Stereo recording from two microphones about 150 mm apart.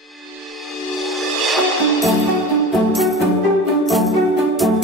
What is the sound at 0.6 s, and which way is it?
Music, centre (ahead or behind).